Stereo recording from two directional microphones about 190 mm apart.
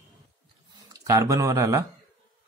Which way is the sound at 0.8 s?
15° right (ahead or behind).